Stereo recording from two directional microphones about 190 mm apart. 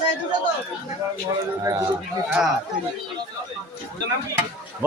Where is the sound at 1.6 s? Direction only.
15° right (ahead or behind).